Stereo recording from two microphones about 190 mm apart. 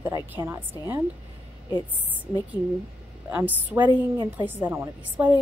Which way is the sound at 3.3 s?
10° right (ahead or behind).